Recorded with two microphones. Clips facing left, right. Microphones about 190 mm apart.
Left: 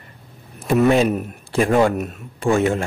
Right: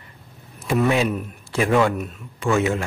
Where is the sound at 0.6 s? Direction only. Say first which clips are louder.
Left 4 dB; 50° left (ahead or behind); by 2.6 s 35° left (ahead or behind).